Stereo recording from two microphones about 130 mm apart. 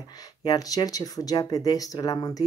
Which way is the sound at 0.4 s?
30° left (ahead or behind).